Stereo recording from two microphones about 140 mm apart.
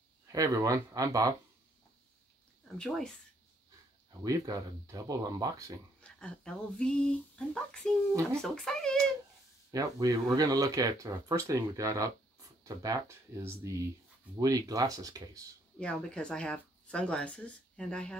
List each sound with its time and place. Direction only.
0.3 s speech: 25° right (ahead or behind)
4.2 s speech: 25° right (ahead or behind)
5.9 s speech: 5° left (ahead or behind)
8.1 s speech: 25° right (ahead or behind)
8.4 s speech: 5° left (ahead or behind)
9.7 s speech: 25° right (ahead or behind)
15.8 s speech: 10° left (ahead or behind)